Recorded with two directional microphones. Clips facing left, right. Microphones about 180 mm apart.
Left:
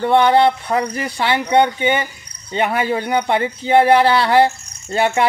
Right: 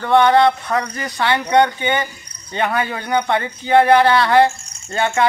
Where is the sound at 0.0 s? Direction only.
25° left (ahead or behind).